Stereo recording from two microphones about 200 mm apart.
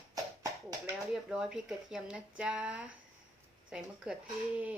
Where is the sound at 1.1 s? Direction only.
5° right (ahead or behind).